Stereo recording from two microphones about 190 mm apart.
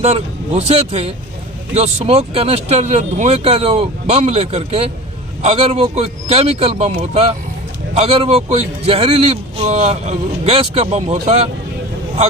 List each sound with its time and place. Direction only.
0.0 s a man's voice: 35° right (ahead or behind)